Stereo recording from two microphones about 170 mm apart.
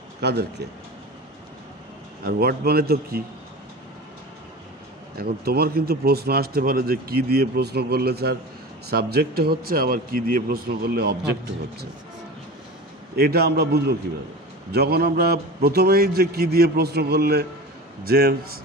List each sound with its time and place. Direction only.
0.2 s speech: 70° right (ahead or behind)
2.2 s speech: 65° right (ahead or behind)
5.1 s speech: 65° right (ahead or behind)
13.1 s a man's voice: 65° right (ahead or behind)